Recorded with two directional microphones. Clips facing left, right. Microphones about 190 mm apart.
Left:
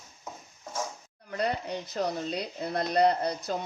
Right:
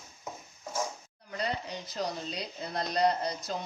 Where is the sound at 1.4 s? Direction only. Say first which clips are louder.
Left 4 dB; 55° left (ahead or behind).